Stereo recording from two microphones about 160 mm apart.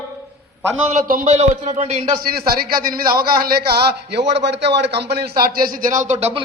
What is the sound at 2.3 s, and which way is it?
A man's voice, 70° right (ahead or behind).